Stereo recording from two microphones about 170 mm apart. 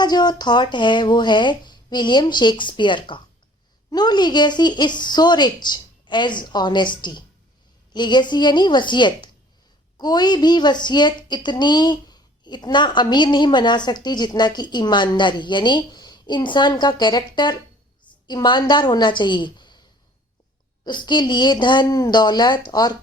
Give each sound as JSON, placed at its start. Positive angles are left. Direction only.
{"t": 0.0, "sound": "a woman's voice", "side_deg": 25}
{"t": 20.8, "sound": "a woman's voice", "side_deg": 25}